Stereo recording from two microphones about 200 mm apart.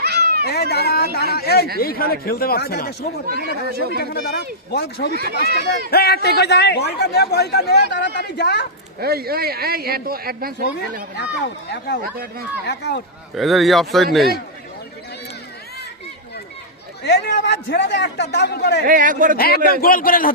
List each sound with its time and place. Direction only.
0.0 s cat: 55° right (ahead or behind)
0.4 s speech: 50° left (ahead or behind)
3.2 s speech: 50° right (ahead or behind)
4.0 s speech: 50° left (ahead or behind)
9.0 s speech: 50° right (ahead or behind)
11.2 s speech: 55° left (ahead or behind)
12.1 s speech: 50° right (ahead or behind)
12.6 s speech: 55° left (ahead or behind)
13.3 s speech: centre (ahead or behind)
17.0 s a man's voice: 55° left (ahead or behind)
18.9 s speech: 45° right (ahead or behind)
19.4 s speech: 50° left (ahead or behind)